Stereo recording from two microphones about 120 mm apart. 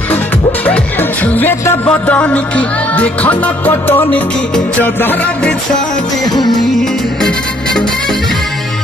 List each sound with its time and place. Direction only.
0.1 s music: 15° left (ahead or behind)
6.2 s music: 35° left (ahead or behind)
6.8 s music: 5° left (ahead or behind)